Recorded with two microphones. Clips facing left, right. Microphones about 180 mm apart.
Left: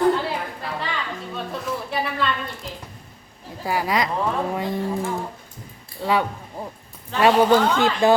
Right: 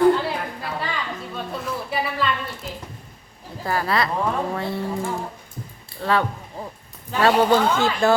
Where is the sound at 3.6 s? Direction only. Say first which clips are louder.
Even; 15° left (ahead or behind).